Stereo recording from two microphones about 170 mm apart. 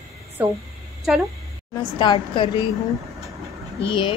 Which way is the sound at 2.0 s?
25° left (ahead or behind).